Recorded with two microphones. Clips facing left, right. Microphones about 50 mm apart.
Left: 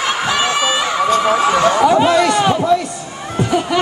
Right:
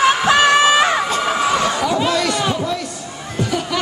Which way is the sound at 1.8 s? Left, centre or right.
Left.